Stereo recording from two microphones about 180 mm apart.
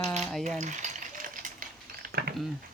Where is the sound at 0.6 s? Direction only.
40° right (ahead or behind).